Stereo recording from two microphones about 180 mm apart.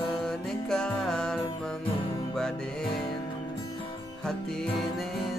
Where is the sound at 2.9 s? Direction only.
30° left (ahead or behind).